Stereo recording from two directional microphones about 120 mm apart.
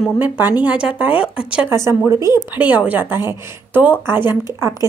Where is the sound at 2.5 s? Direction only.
10° right (ahead or behind).